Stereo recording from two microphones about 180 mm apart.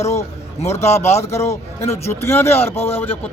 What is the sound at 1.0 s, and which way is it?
Speech, 40° left (ahead or behind).